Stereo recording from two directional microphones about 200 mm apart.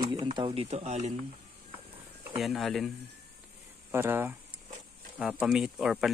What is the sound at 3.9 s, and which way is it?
Speech, 10° right (ahead or behind).